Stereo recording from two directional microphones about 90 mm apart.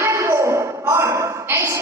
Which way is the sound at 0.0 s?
35° right (ahead or behind).